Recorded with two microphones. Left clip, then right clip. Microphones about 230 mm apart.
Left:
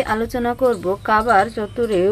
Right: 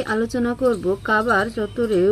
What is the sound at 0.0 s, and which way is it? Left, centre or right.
Speech, left.